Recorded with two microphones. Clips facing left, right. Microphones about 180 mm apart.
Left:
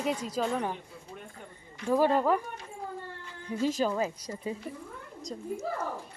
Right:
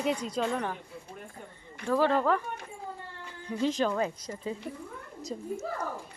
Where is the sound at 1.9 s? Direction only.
15° left (ahead or behind).